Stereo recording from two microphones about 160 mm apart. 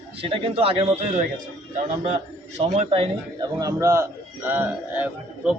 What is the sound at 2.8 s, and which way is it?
A man's voice, 35° right (ahead or behind).